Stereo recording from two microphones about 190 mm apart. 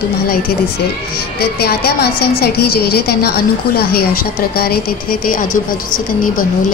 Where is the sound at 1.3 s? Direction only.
55° left (ahead or behind).